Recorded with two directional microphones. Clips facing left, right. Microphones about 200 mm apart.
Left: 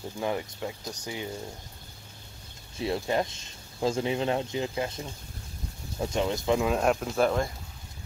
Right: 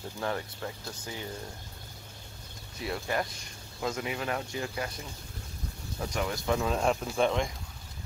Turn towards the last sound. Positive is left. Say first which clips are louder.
# left 2 dB
turn(degrees=5)  # may be behind; listen again after turning